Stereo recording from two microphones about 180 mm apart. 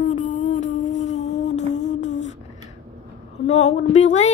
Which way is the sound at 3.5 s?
35° left (ahead or behind).